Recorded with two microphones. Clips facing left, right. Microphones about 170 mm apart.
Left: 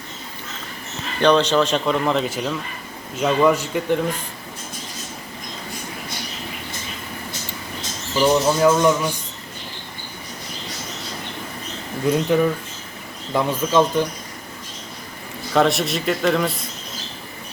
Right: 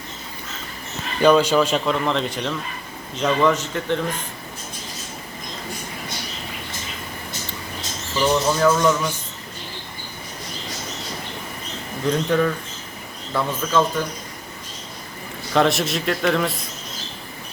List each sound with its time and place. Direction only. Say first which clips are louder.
1.2 s speech: right 1 dB; 10° right (ahead or behind); by 4.0 s 10° left (ahead or behind)
8.1 s speech: left 3 dB; 20° left (ahead or behind)
12.0 s speech: left 2 dB; 10° left (ahead or behind)
15.5 s speech: left 1 dB; centre (ahead or behind)